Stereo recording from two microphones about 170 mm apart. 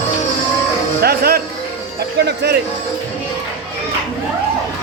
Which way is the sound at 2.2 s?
75° right (ahead or behind).